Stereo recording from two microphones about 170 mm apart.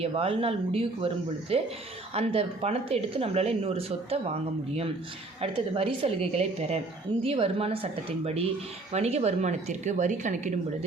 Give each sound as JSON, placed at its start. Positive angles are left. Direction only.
{"t": 0.0, "sound": "speech", "side_deg": -35}
{"t": 5.4, "sound": "speech", "side_deg": -35}